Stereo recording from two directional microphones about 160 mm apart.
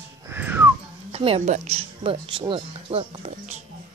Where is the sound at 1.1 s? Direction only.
35° right (ahead or behind).